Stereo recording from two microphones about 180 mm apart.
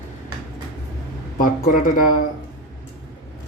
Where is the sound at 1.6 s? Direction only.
50° left (ahead or behind).